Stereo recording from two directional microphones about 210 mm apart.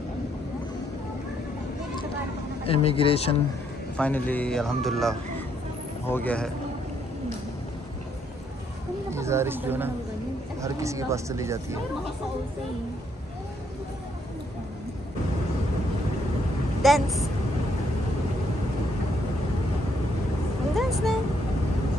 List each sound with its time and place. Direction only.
2.6 s speech: 30° left (ahead or behind)
3.9 s a man's voice: 5° left (ahead or behind)
9.1 s speech: 15° right (ahead or behind)
16.8 s a woman's voice: centre (ahead or behind)
20.7 s vehicle: centre (ahead or behind)